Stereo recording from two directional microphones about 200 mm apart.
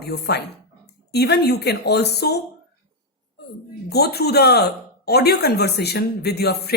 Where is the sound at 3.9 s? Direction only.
55° left (ahead or behind).